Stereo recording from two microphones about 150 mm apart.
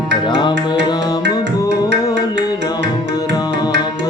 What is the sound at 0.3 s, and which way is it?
Music, 30° left (ahead or behind).